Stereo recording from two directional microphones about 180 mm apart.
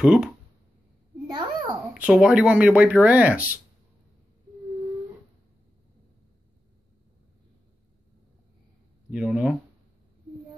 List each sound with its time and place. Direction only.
0.0 s speech: 5° right (ahead or behind)
1.2 s a sound: 25° right (ahead or behind)
2.0 s speech: 5° right (ahead or behind)
9.1 s speech: centre (ahead or behind)